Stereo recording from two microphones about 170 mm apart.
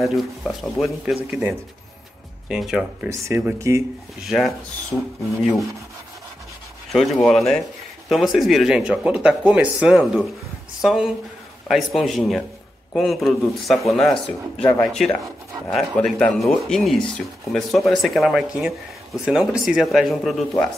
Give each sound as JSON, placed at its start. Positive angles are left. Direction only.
{"t": 0.0, "sound": "speech", "side_deg": 0}
{"t": 2.4, "sound": "speech", "side_deg": -5}
{"t": 3.1, "sound": "speech", "side_deg": -15}
{"t": 4.2, "sound": "speech", "side_deg": 0}
{"t": 6.9, "sound": "speech", "side_deg": 0}